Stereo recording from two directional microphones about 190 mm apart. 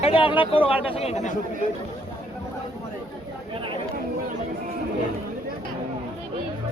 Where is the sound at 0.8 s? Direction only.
30° left (ahead or behind).